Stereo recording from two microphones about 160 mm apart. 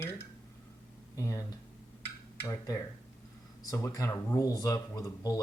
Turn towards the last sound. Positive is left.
turn(degrees=20)  # may be behind; listen again after turning